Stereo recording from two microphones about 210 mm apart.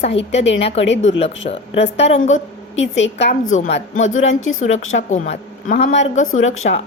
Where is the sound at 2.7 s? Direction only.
60° left (ahead or behind).